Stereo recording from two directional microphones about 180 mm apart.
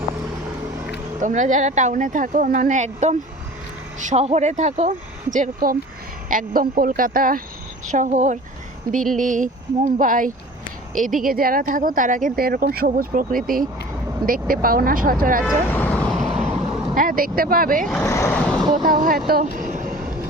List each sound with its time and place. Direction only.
1.2 s speech: 45° right (ahead or behind)
15.7 s vehicle: 10° left (ahead or behind)
16.3 s vehicle: 35° right (ahead or behind)
16.9 s speech: 50° right (ahead or behind)
18.0 s speech: 15° left (ahead or behind)
18.7 s speech: 50° right (ahead or behind)
19.3 s vehicle: 50° right (ahead or behind)